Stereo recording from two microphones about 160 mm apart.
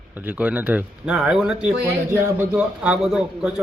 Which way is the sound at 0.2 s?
10° right (ahead or behind).